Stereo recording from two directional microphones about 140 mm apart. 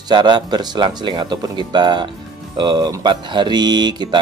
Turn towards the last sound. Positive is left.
turn(degrees=-30)  # may be behind; listen again after turning